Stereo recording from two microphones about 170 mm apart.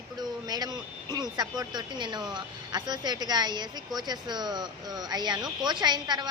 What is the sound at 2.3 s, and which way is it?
A woman's voice, 25° right (ahead or behind).